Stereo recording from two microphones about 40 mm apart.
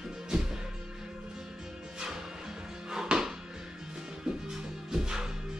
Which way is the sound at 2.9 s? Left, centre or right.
Centre.